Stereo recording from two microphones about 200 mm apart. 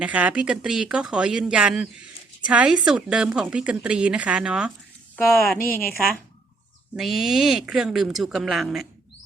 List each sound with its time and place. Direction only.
0.0 s a woman's voice: 5° right (ahead or behind)
5.5 s a woman's voice: 45° left (ahead or behind)
6.9 s a woman's voice: centre (ahead or behind)